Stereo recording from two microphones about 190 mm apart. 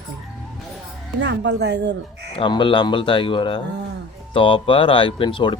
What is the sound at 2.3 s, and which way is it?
Speech, 25° left (ahead or behind).